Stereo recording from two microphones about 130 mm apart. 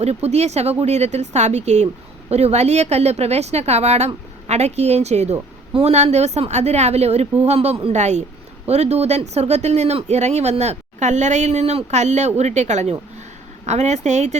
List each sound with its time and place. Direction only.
0.0 s a woman's voice: 55° right (ahead or behind)